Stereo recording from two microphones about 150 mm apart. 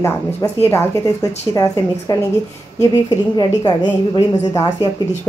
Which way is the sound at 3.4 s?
30° left (ahead or behind).